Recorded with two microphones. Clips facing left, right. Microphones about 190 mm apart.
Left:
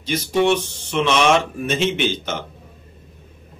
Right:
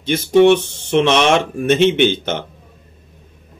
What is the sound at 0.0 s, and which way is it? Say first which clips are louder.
Speech: right 7 dB; 60° right (ahead or behind).